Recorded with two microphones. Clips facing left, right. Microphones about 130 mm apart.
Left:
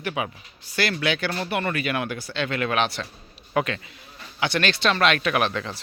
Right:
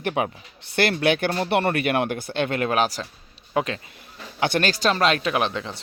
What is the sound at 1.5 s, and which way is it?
Speech, 60° right (ahead or behind).